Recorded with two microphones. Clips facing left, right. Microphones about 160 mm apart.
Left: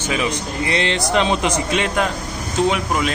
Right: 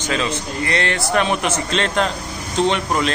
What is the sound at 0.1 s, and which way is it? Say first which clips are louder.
A man's voice: even; 15° left (ahead or behind).